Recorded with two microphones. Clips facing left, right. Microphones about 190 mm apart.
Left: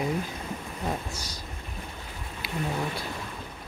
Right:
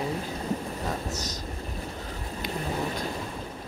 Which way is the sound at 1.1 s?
10° left (ahead or behind).